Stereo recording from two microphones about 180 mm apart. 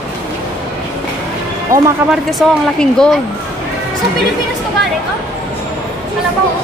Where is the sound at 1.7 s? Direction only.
50° right (ahead or behind).